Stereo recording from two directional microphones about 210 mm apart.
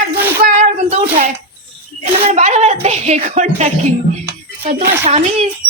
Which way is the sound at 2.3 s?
35° right (ahead or behind).